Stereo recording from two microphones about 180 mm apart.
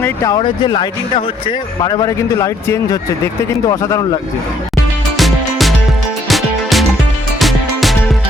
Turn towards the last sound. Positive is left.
turn(degrees=0)  # may be behind; listen again after turning